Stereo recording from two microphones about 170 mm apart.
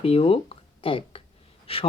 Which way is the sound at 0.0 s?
35° left (ahead or behind).